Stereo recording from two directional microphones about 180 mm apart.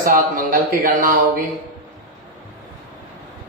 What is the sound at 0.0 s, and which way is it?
A man's voice, 50° right (ahead or behind).